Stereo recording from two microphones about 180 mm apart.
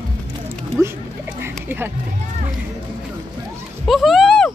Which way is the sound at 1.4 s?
10° right (ahead or behind).